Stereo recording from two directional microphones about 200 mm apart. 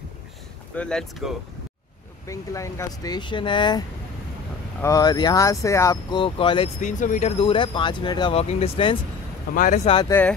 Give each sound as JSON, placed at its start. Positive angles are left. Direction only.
{"t": 0.7, "sound": "speech", "side_deg": 5}
{"t": 2.2, "sound": "speech", "side_deg": 15}
{"t": 4.8, "sound": "speech", "side_deg": 20}
{"t": 6.8, "sound": "speech", "side_deg": 40}
{"t": 9.5, "sound": "speech", "side_deg": 40}
{"t": 9.9, "sound": "a woman's voice", "side_deg": 15}